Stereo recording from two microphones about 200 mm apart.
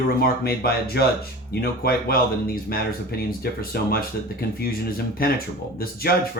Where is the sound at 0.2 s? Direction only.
50° left (ahead or behind).